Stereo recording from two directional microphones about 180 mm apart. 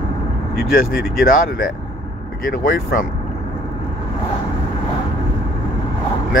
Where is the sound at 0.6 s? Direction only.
55° left (ahead or behind).